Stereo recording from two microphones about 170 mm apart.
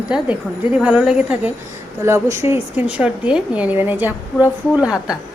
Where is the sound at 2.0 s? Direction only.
15° right (ahead or behind).